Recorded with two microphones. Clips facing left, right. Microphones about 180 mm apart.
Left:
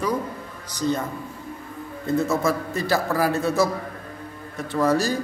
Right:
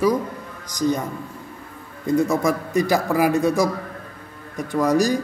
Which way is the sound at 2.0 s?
15° right (ahead or behind).